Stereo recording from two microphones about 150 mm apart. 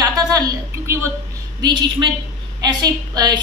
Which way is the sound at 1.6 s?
30° right (ahead or behind).